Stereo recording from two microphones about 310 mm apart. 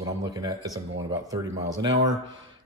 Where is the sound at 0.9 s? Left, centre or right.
Right.